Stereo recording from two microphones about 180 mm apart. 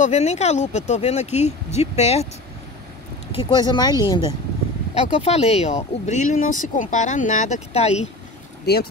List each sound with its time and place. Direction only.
0.0 s speech: 40° left (ahead or behind)
3.3 s speech: 30° left (ahead or behind)
4.9 s speech: 35° left (ahead or behind)